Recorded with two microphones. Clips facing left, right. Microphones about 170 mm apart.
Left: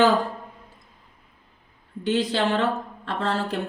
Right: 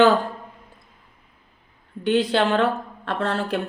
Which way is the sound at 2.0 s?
60° right (ahead or behind).